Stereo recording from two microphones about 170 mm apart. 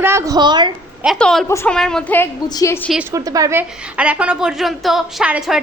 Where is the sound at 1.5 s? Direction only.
15° left (ahead or behind).